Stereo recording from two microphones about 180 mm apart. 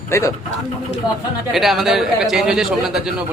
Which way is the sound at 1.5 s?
Centre (ahead or behind).